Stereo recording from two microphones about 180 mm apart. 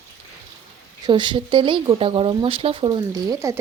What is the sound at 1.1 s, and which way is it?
Speech, 25° right (ahead or behind).